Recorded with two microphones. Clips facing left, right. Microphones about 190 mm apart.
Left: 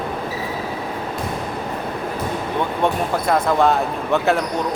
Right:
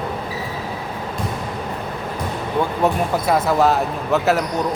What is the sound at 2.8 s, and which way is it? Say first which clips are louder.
Speech: even; 5° right (ahead or behind).